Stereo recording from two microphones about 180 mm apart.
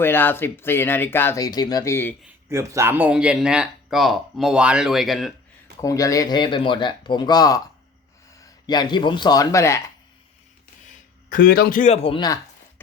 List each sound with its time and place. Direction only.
0.0 s speech: 10° left (ahead or behind)
2.2 s speech: 15° right (ahead or behind)
5.8 s speech: 20° left (ahead or behind)
11.3 s a man's voice: 50° left (ahead or behind)
12.0 s speech: 25° left (ahead or behind)